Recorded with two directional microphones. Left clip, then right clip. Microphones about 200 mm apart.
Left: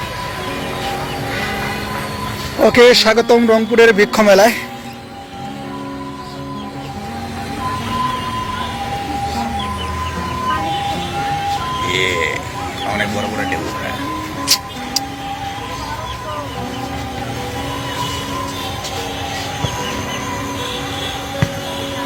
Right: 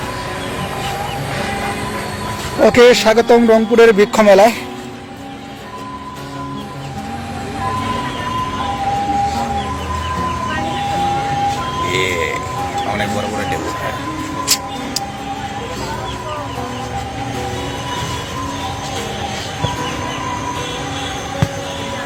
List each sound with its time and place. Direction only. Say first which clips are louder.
2.6 s a man's voice: even; centre (ahead or behind)
11.9 s a sound: left 1 dB; centre (ahead or behind)
14.5 s music: left 2 dB; 15° right (ahead or behind)